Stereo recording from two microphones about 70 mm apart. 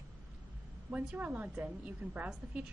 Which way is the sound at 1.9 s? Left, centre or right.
Right.